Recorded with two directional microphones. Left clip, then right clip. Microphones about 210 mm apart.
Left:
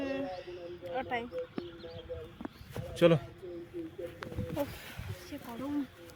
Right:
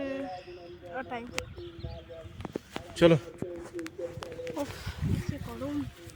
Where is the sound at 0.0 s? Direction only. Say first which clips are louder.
Right 1 dB; 15° left (ahead or behind).